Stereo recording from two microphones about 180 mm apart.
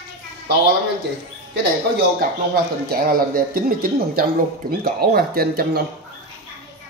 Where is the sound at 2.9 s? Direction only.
55° right (ahead or behind).